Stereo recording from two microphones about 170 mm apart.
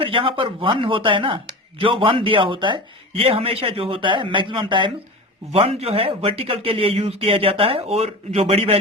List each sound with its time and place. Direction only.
0.0 s speech: 30° right (ahead or behind)